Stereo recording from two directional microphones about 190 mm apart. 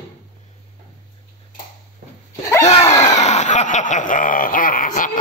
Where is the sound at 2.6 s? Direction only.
35° left (ahead or behind).